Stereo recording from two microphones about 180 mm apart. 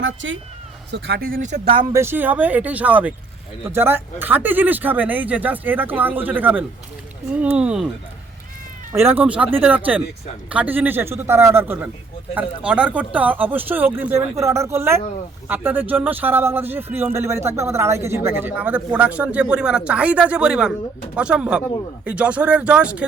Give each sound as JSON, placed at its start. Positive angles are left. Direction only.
{"t": 0.0, "sound": "speech", "side_deg": -90}
{"t": 0.9, "sound": "speech", "side_deg": -70}
{"t": 1.7, "sound": "speech", "side_deg": -25}
{"t": 2.0, "sound": "speech", "side_deg": -10}
{"t": 8.9, "sound": "speech", "side_deg": -15}